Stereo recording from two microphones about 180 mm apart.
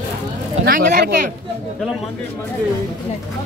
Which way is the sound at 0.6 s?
55° right (ahead or behind).